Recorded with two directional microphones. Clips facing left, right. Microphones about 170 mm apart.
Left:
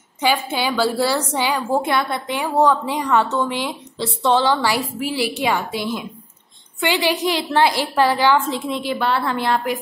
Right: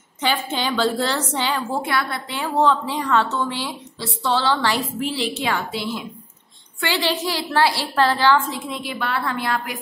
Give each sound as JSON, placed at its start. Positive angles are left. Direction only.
{"t": 0.2, "sound": "a woman's voice", "side_deg": 10}
{"t": 1.8, "sound": "a woman's voice", "side_deg": 20}
{"t": 8.5, "sound": "a woman's voice", "side_deg": 30}